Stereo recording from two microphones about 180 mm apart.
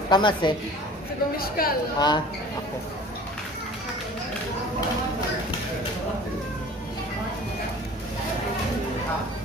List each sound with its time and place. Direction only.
0.1 s a woman's voice: 25° left (ahead or behind)
1.4 s a woman's voice: 55° left (ahead or behind)
2.0 s a woman's voice: 25° left (ahead or behind)